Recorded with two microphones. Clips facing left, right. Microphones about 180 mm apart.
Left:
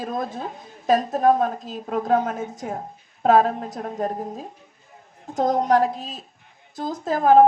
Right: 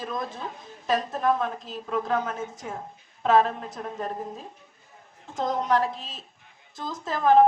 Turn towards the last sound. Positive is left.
turn(degrees=45)  # may be behind; listen again after turning